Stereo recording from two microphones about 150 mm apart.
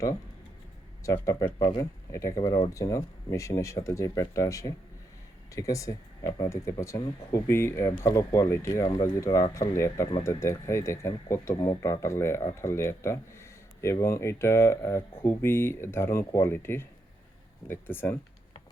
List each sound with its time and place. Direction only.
1.0 s speech: 20° left (ahead or behind)